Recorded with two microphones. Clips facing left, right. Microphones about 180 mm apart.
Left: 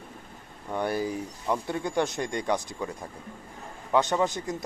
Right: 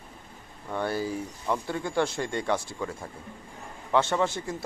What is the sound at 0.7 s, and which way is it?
A man's voice, 15° left (ahead or behind).